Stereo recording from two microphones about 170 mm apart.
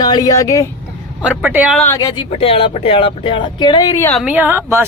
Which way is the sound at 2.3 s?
35° left (ahead or behind).